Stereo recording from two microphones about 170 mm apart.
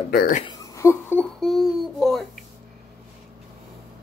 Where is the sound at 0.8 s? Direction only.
15° left (ahead or behind).